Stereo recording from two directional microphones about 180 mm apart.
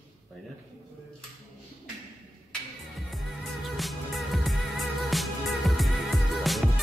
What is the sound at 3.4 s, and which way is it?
Music, centre (ahead or behind).